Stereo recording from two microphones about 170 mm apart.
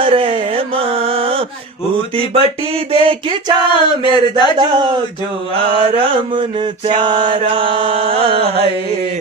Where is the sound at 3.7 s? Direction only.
30° left (ahead or behind).